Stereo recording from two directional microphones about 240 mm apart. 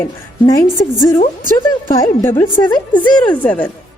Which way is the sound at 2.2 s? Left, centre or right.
Centre.